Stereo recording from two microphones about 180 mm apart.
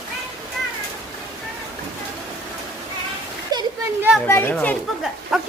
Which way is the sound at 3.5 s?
25° right (ahead or behind).